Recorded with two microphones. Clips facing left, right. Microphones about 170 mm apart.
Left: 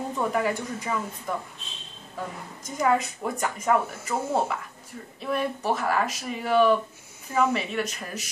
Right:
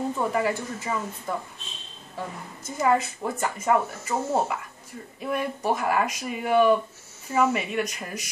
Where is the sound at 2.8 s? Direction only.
5° right (ahead or behind).